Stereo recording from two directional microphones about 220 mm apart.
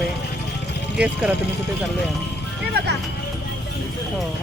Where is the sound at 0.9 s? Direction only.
5° right (ahead or behind).